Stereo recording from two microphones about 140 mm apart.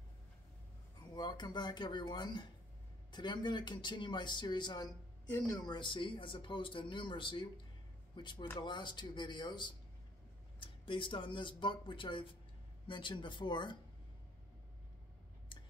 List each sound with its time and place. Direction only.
1.1 s speech: 30° left (ahead or behind)